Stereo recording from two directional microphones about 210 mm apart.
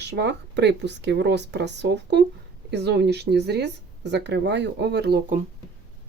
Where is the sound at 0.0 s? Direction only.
55° right (ahead or behind).